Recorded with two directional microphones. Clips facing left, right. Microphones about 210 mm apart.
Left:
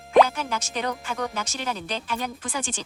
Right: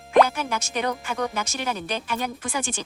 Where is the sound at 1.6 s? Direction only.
60° right (ahead or behind).